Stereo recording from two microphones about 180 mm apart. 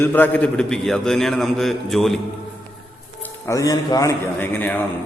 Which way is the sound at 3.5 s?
20° left (ahead or behind).